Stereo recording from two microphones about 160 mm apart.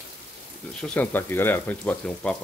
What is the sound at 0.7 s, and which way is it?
Speech, 5° left (ahead or behind).